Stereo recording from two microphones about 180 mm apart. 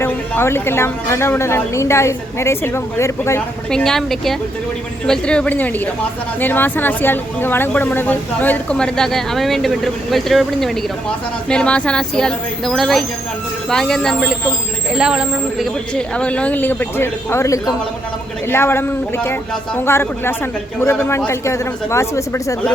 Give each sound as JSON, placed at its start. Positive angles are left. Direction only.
{"t": 0.0, "sound": "speech", "side_deg": 15}
{"t": 3.7, "sound": "speech", "side_deg": 5}